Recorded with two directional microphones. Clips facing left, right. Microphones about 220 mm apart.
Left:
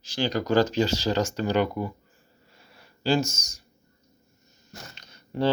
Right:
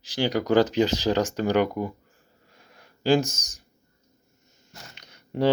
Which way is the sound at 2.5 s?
15° right (ahead or behind).